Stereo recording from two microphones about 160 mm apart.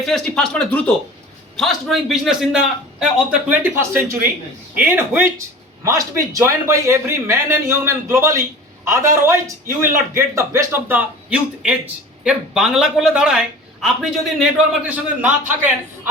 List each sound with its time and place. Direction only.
0.0 s a man's voice: 5° left (ahead or behind)